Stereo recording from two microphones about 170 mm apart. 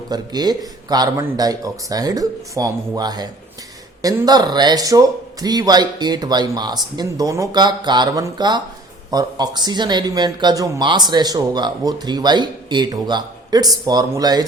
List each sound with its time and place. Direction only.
0.1 s speech: 25° right (ahead or behind)